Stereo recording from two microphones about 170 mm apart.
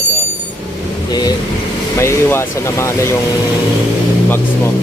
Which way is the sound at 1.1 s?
25° left (ahead or behind).